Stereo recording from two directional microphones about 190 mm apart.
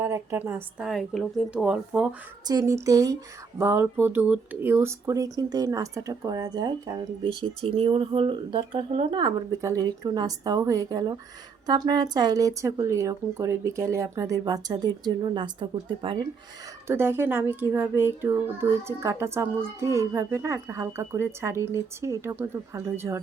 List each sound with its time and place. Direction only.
0.0 s a woman's voice: 15° right (ahead or behind)
2.5 s a child's voice: 20° right (ahead or behind)
16.8 s a child's voice: 10° right (ahead or behind)